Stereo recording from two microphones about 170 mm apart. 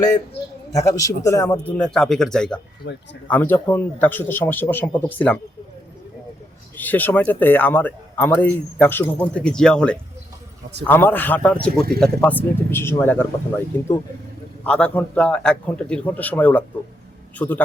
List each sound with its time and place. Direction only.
0.7 s speech: 20° left (ahead or behind); by 2.6 s 5° left (ahead or behind)
2.8 s speech: 90° left
3.2 s speech: 10° left (ahead or behind)
6.7 s speech: 10° left (ahead or behind)
14.6 s speech: 10° left (ahead or behind)